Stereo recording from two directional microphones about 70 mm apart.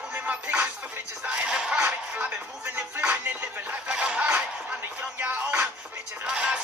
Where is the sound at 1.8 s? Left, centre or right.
Right.